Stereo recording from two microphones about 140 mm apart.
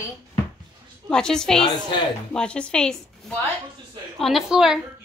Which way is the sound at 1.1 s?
5° left (ahead or behind).